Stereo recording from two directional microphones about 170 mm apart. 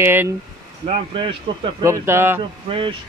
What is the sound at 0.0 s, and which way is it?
Speech, 10° right (ahead or behind).